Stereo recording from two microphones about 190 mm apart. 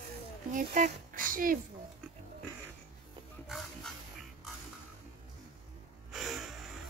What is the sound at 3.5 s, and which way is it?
Pig, centre (ahead or behind).